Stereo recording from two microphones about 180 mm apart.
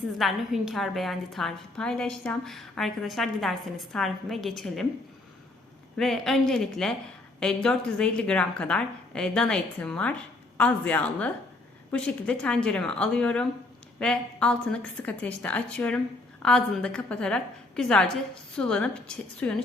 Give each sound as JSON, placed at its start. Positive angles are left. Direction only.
{"t": 0.2, "sound": "a woman's voice", "side_deg": 0}
{"t": 6.0, "sound": "a woman's voice", "side_deg": 0}